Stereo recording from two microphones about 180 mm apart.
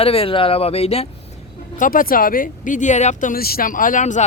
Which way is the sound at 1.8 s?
50° left (ahead or behind).